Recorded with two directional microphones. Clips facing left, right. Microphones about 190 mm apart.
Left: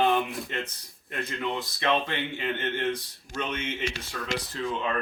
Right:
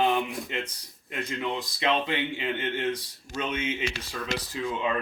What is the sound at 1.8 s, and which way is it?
Speech, 15° right (ahead or behind).